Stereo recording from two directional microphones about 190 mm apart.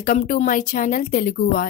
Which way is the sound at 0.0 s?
45° left (ahead or behind).